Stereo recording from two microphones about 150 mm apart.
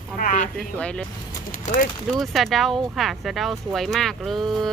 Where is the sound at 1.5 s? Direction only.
65° left (ahead or behind).